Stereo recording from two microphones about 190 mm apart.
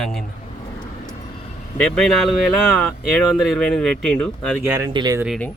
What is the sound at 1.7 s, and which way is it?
Speech, 5° left (ahead or behind).